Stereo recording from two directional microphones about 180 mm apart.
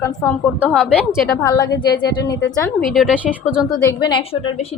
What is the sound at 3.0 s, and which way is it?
Speech, 5° right (ahead or behind).